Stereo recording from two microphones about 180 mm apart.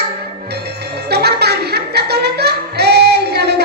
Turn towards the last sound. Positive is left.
turn(degrees=-65)  # may be behind; listen again after turning